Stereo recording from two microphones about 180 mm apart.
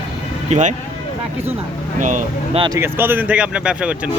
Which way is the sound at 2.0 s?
45° right (ahead or behind).